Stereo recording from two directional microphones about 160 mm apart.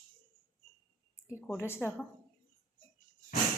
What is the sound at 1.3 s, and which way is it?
Speech, 15° left (ahead or behind).